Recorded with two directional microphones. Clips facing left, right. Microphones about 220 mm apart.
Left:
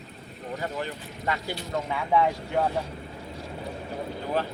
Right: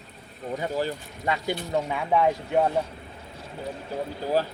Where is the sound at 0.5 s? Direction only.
20° right (ahead or behind).